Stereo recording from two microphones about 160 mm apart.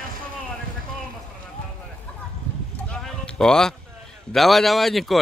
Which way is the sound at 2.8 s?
5° left (ahead or behind).